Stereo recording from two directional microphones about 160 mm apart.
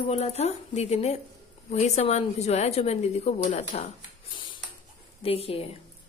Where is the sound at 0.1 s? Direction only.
40° left (ahead or behind).